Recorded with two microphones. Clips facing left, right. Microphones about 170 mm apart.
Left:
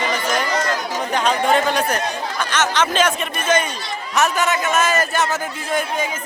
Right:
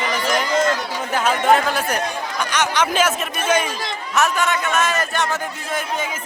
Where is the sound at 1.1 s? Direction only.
5° right (ahead or behind).